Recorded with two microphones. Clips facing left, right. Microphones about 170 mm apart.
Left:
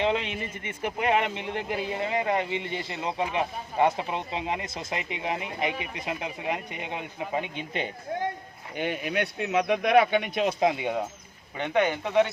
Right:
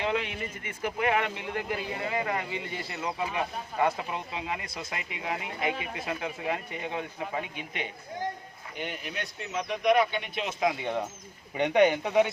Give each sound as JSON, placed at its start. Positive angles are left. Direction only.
{"t": 0.0, "sound": "speech", "side_deg": 25}
{"t": 8.8, "sound": "speech", "side_deg": 65}
{"t": 10.8, "sound": "speech", "side_deg": 10}
{"t": 11.5, "sound": "speech", "side_deg": -15}